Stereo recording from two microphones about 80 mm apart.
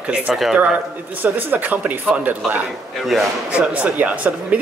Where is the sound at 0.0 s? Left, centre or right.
Centre.